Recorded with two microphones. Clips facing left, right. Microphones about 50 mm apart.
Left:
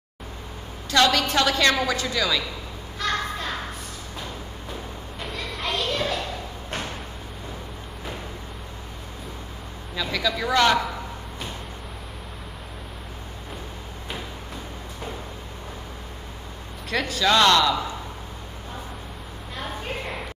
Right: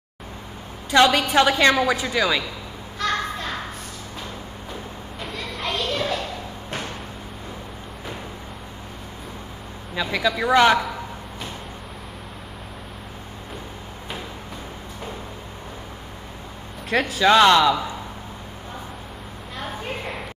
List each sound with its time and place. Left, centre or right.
0.8 s a woman's voice: centre
3.0 s children playing: centre
5.2 s children playing: centre
10.1 s a woman's voice: centre
16.9 s speech: centre
17.2 s a woman's voice: centre
19.5 s a sound: centre